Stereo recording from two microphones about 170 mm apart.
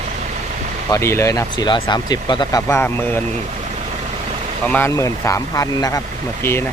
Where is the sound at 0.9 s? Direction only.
15° left (ahead or behind).